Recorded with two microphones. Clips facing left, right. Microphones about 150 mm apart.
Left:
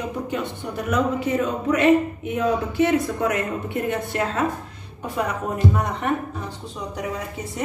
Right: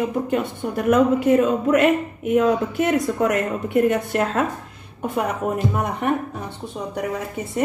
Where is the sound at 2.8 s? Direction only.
50° right (ahead or behind).